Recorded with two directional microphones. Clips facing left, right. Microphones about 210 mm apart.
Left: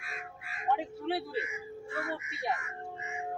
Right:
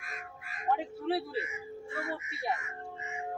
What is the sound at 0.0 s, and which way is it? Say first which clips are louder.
Crow: left 1 dB; 45° right (ahead or behind).